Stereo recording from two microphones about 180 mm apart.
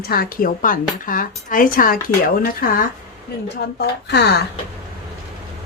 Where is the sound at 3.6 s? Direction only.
65° left (ahead or behind).